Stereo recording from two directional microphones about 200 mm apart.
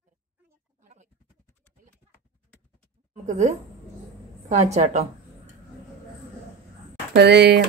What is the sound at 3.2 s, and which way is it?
A woman's voice, 35° right (ahead or behind).